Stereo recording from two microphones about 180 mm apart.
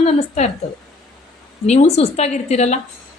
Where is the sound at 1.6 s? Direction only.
35° left (ahead or behind).